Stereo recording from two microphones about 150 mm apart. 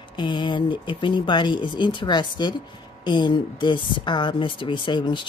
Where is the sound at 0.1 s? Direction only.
30° left (ahead or behind).